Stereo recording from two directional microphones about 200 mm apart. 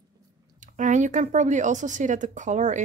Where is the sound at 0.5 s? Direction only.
40° right (ahead or behind).